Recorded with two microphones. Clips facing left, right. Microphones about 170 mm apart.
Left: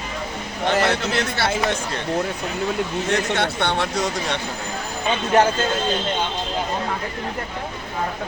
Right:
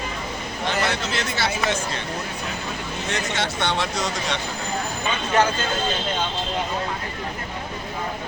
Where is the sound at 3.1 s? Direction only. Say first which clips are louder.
Left 2 dB; 60° left (ahead or behind).